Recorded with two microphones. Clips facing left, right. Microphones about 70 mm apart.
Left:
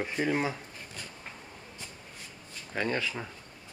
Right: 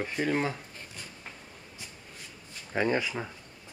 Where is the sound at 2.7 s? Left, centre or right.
Centre.